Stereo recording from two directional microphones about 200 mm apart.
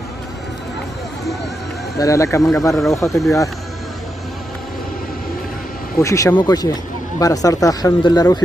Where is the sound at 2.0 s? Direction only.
15° left (ahead or behind).